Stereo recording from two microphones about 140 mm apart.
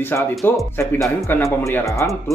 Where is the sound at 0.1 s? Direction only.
15° left (ahead or behind).